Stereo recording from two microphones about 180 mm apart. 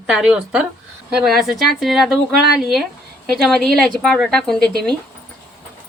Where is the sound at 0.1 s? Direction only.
5° right (ahead or behind).